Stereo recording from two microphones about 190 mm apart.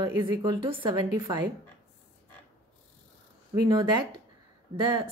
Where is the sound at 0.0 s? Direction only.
20° right (ahead or behind).